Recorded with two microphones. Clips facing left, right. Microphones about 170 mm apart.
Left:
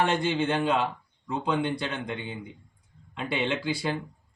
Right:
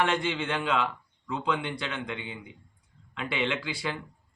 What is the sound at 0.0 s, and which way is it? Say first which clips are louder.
Speech: left 3 dB; 35° left (ahead or behind).